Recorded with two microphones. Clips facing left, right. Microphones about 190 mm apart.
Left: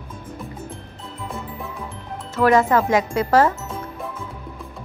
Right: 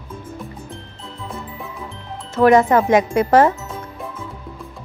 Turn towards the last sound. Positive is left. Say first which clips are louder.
# right 3 dB
turn(degrees=-20)  # may be behind; listen again after turning